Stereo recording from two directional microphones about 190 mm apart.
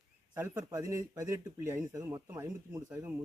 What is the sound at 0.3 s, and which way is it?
Speech, 15° right (ahead or behind).